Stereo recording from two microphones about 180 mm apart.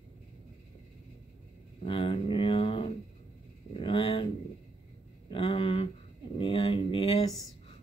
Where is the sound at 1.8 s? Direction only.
30° left (ahead or behind).